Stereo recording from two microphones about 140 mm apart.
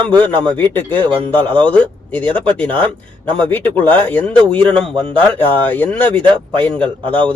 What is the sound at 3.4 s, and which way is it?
A man's voice, 15° left (ahead or behind).